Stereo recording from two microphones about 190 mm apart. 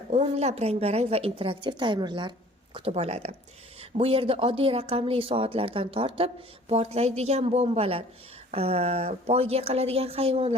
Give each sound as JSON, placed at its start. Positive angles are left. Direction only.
{"t": 0.1, "sound": "speech", "side_deg": -35}